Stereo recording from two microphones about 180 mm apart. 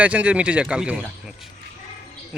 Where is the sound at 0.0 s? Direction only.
5° right (ahead or behind).